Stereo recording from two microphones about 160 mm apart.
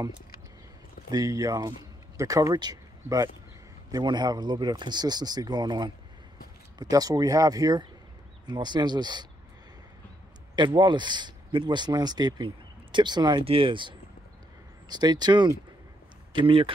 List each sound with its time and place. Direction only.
1.1 s speech: 20° right (ahead or behind)
10.5 s speech: 30° right (ahead or behind)